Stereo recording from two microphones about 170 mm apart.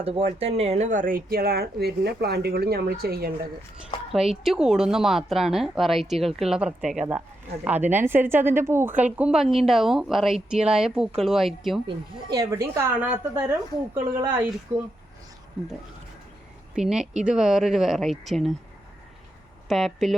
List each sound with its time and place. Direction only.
0.0 s speech: 35° right (ahead or behind); by 3.3 s 65° right (ahead or behind)
4.1 s a woman's voice: centre (ahead or behind)
11.9 s a woman's voice: 20° right (ahead or behind)
16.7 s a woman's voice: 5° right (ahead or behind)
19.6 s a woman's voice: centre (ahead or behind)